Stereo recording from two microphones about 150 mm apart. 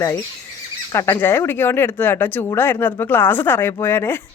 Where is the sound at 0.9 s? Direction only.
15° left (ahead or behind).